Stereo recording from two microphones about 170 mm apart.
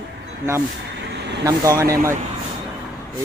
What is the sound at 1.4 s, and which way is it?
Speech, 20° right (ahead or behind).